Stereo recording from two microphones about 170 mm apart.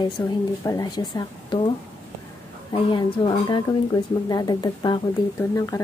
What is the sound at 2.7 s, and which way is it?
A woman's voice, 30° left (ahead or behind).